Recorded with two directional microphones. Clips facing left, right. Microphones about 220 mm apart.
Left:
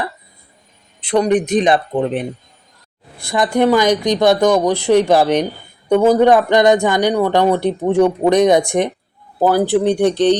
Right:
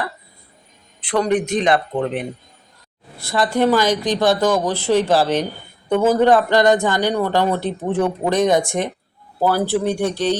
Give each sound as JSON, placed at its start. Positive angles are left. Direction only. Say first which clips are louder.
{"t": 1.0, "sound": "speech", "louder": "left 4 dB", "side_deg": 20}